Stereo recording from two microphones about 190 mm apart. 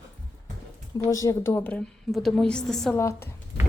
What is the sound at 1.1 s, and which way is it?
A woman's voice, 15° left (ahead or behind).